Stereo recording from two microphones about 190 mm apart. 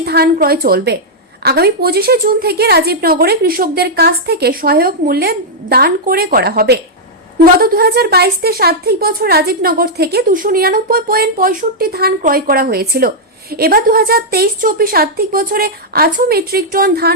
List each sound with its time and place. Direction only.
0.0 s a woman's voice: 55° right (ahead or behind)